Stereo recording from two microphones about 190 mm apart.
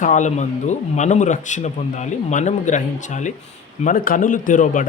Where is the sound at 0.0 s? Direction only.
40° left (ahead or behind).